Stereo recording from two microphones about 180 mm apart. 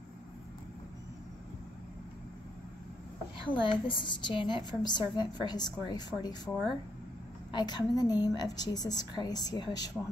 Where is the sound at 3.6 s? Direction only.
25° left (ahead or behind).